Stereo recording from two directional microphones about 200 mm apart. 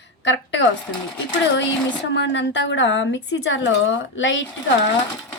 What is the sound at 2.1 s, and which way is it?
Speech, 65° left (ahead or behind).